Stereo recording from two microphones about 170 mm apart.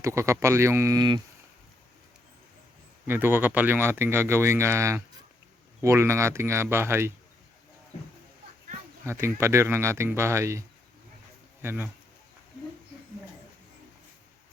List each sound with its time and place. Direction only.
0.0 s speech: 15° right (ahead or behind)
3.1 s speech: 10° right (ahead or behind)
9.0 s speech: 15° right (ahead or behind)
11.6 s speech: 15° right (ahead or behind)